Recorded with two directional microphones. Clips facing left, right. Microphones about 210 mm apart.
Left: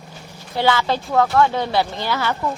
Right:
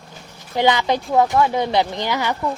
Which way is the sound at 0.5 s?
15° right (ahead or behind).